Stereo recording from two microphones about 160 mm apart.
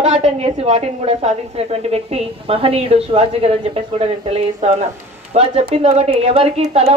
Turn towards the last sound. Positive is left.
turn(degrees=-40)  # may be behind; listen again after turning